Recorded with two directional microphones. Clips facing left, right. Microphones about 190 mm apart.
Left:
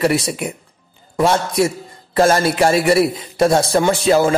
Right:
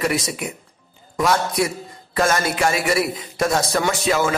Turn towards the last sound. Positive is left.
turn(degrees=35)  # may be behind; listen again after turning